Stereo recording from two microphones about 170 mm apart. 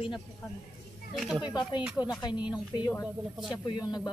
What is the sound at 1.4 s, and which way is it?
Speech, 25° left (ahead or behind).